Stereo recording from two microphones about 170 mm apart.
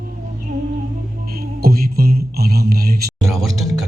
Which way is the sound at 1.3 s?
60° right (ahead or behind).